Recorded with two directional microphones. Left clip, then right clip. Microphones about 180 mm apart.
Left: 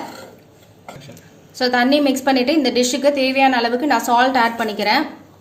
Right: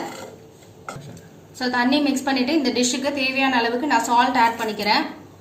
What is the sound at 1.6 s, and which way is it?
A woman's voice, 45° left (ahead or behind).